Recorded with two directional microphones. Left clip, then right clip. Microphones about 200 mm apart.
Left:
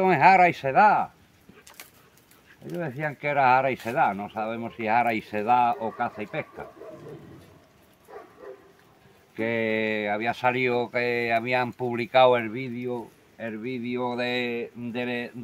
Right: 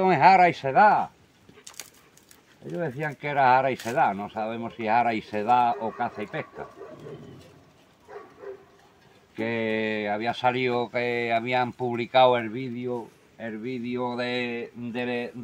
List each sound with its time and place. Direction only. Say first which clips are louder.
0.0 s speech: even; 10° right (ahead or behind)
1.8 s dog: right 4 dB; 60° right (ahead or behind)
2.6 s speech: right 1 dB; centre (ahead or behind)
9.3 s speech: left 2 dB; 10° right (ahead or behind)